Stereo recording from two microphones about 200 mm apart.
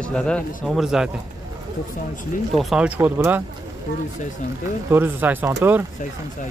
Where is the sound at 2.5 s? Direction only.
Centre (ahead or behind).